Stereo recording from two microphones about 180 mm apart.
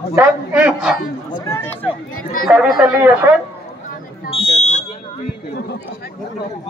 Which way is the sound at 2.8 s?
10° right (ahead or behind).